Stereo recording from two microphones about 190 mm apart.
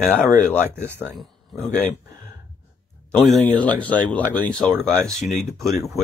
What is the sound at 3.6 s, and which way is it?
Speech, 5° left (ahead or behind).